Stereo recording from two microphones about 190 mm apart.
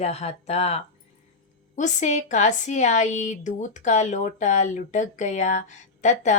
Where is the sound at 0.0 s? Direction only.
35° left (ahead or behind).